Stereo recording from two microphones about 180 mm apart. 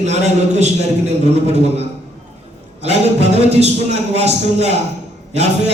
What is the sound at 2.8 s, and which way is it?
A man's voice, 35° right (ahead or behind).